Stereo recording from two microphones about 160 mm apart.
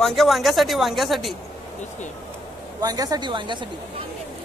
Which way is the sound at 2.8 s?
25° right (ahead or behind).